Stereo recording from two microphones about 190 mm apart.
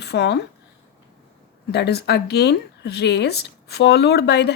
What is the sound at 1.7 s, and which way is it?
Speech, 60° left (ahead or behind).